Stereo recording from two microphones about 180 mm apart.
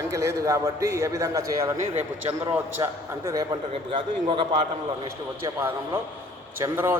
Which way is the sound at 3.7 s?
30° right (ahead or behind).